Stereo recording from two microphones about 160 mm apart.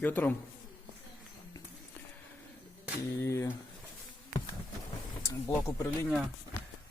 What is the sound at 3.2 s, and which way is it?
Speech, 20° left (ahead or behind).